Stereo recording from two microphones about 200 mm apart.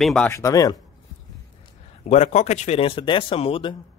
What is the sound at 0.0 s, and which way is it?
Speech, centre (ahead or behind).